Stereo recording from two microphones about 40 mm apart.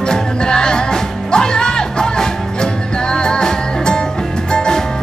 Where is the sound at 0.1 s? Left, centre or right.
Centre.